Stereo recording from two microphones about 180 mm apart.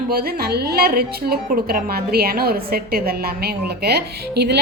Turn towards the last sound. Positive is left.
turn(degrees=-65)  # may be behind; listen again after turning